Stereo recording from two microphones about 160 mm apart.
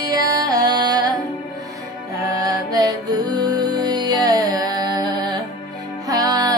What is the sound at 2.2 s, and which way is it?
Music, 25° right (ahead or behind).